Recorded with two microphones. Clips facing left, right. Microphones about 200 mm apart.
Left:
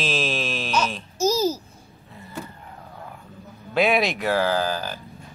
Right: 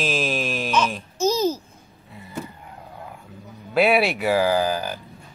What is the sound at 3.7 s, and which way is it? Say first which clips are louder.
Speech: right 2 dB; 5° right (ahead or behind).